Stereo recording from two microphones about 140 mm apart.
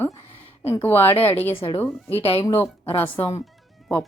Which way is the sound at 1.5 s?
40° left (ahead or behind).